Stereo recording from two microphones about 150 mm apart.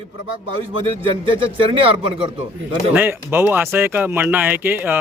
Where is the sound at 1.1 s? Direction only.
35° right (ahead or behind).